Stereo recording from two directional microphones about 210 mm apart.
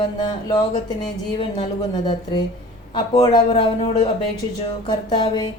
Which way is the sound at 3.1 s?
20° left (ahead or behind).